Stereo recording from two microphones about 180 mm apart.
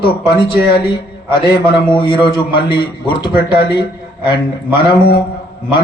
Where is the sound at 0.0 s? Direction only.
25° left (ahead or behind).